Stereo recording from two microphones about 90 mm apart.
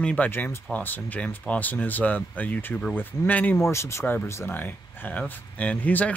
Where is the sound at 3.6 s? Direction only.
30° left (ahead or behind).